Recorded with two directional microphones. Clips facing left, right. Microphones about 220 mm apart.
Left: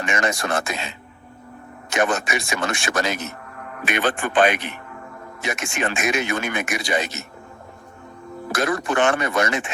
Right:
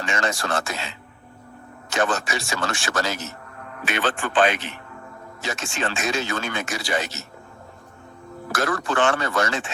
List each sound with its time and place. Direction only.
0.0 s speech: 15° left (ahead or behind)
8.5 s speech: 20° left (ahead or behind)